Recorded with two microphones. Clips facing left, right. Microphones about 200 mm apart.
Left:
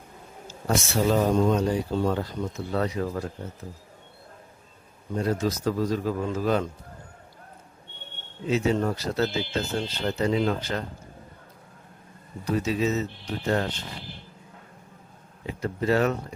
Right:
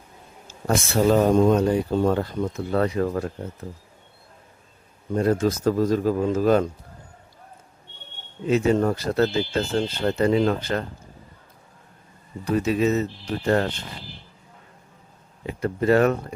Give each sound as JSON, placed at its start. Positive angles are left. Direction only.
{"t": 0.7, "sound": "speech", "side_deg": -55}
{"t": 5.1, "sound": "speech", "side_deg": -55}
{"t": 8.4, "sound": "speech", "side_deg": -55}
{"t": 12.5, "sound": "speech", "side_deg": -55}
{"t": 15.4, "sound": "speech", "side_deg": -55}